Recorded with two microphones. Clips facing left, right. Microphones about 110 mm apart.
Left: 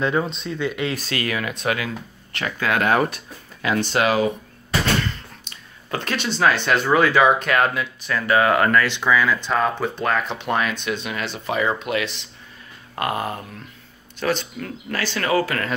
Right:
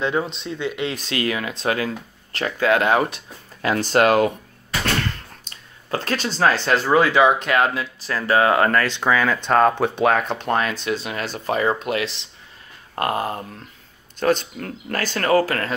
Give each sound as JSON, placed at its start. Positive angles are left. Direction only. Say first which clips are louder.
{"t": 0.0, "sound": "speech", "louder": "left 1 dB", "side_deg": -15}
{"t": 3.6, "sound": "speech", "louder": "right 3 dB", "side_deg": -40}
{"t": 5.4, "sound": "speech", "louder": "left 1 dB", "side_deg": -35}
{"t": 14.2, "sound": "speech", "louder": "right 3 dB", "side_deg": -45}